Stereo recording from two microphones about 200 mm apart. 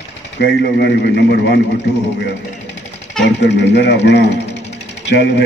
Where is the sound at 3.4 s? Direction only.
60° left (ahead or behind).